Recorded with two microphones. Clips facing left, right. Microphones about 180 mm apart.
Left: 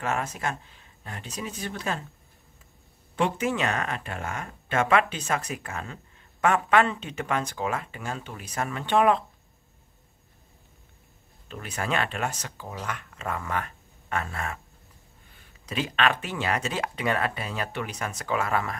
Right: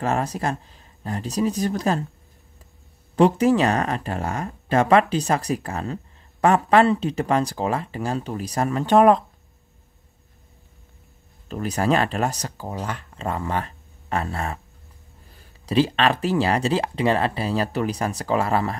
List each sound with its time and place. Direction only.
0.0 s speech: 35° right (ahead or behind)
3.2 s speech: 35° right (ahead or behind)
11.4 s speech: 40° right (ahead or behind)